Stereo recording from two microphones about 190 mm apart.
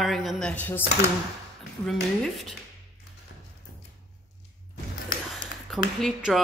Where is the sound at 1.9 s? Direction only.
Centre (ahead or behind).